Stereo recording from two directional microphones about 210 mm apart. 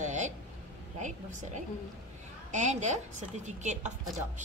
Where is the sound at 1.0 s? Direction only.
35° right (ahead or behind).